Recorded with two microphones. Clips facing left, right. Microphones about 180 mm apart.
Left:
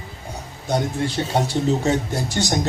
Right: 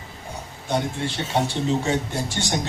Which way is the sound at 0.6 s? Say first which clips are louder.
Left 3 dB; 40° left (ahead or behind).